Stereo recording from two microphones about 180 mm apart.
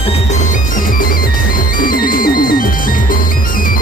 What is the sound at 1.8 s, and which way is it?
Music, 50° left (ahead or behind).